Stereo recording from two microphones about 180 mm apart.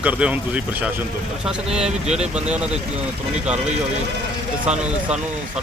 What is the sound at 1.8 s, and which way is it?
Speech, 35° right (ahead or behind).